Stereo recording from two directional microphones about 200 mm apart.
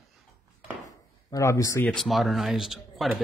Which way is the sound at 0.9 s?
15° left (ahead or behind).